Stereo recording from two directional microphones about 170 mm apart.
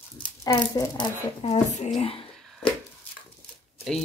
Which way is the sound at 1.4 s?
40° left (ahead or behind).